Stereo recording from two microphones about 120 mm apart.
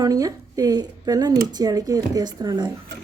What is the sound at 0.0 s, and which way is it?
Speech, 30° right (ahead or behind).